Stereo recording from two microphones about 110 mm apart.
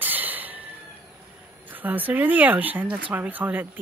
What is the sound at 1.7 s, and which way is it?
Speech, 15° right (ahead or behind).